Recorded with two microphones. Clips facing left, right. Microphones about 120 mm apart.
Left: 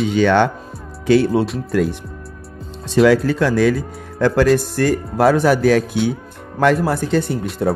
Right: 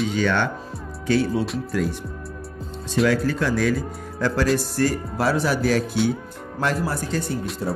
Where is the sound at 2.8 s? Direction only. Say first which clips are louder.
Left 7 dB; 85° left.